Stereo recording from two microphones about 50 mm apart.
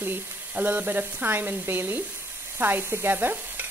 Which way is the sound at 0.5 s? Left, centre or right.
Right.